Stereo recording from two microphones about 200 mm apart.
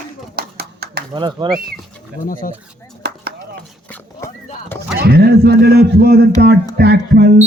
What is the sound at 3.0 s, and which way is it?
Chop, 55° right (ahead or behind).